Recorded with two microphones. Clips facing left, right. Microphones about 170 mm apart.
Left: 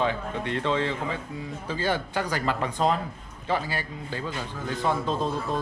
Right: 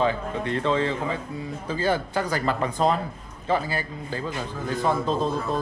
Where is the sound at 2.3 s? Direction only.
35° right (ahead or behind).